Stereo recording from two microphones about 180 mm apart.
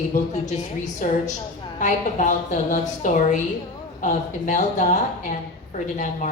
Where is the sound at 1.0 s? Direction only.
45° left (ahead or behind).